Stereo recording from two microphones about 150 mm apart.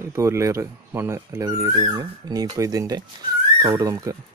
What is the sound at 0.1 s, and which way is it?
Speech, 20° right (ahead or behind).